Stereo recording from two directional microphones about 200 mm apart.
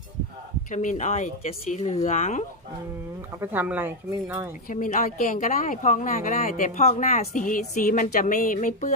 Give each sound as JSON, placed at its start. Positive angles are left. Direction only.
{"t": 0.7, "sound": "a woman's voice", "side_deg": 40}
{"t": 3.3, "sound": "speech", "side_deg": -10}
{"t": 4.6, "sound": "a woman's voice", "side_deg": 45}